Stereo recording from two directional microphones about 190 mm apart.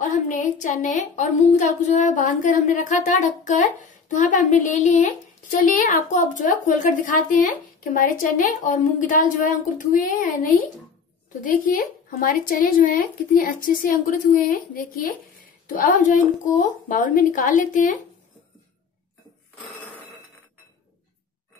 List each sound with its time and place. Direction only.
0.0 s a woman's voice: 40° left (ahead or behind)
11.4 s speech: 45° left (ahead or behind)